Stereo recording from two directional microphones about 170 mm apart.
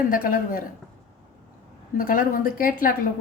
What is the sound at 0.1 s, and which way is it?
Speech, 55° left (ahead or behind).